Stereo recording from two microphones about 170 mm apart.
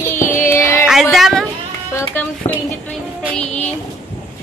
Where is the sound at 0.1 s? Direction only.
15° left (ahead or behind).